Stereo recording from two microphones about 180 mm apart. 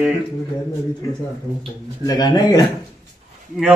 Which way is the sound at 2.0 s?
20° left (ahead or behind).